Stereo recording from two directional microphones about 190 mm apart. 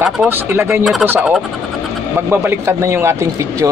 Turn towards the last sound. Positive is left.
turn(degrees=-15)  # may be behind; listen again after turning